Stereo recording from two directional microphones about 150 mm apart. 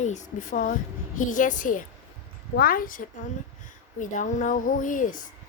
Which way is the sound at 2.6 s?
70° left (ahead or behind).